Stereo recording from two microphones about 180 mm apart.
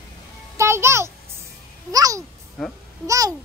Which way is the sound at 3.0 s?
20° right (ahead or behind).